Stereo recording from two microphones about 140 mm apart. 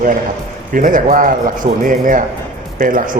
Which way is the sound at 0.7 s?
70° right (ahead or behind).